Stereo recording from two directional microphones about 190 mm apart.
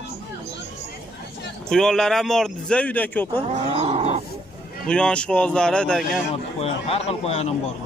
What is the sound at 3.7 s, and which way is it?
Wild animals, 30° right (ahead or behind).